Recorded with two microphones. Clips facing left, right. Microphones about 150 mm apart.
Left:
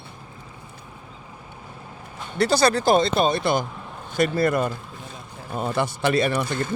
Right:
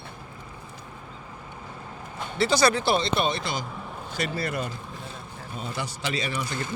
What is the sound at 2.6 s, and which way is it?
Speech, 40° left (ahead or behind).